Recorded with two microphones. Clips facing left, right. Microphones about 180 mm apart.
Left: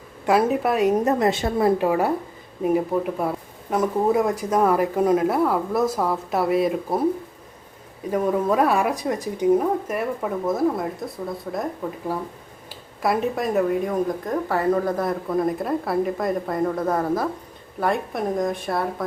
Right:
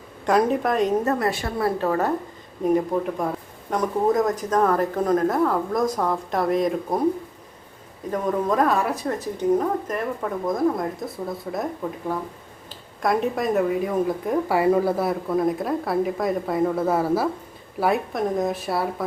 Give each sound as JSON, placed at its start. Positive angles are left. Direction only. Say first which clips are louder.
{"t": 0.3, "sound": "a woman's voice", "louder": "left 1 dB", "side_deg": 5}
{"t": 1.2, "sound": "a woman's voice", "louder": "left 4 dB", "side_deg": 20}
{"t": 8.1, "sound": "a woman's voice", "louder": "left 2 dB", "side_deg": 10}